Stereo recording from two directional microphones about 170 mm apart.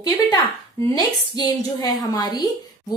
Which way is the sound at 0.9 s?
25° left (ahead or behind).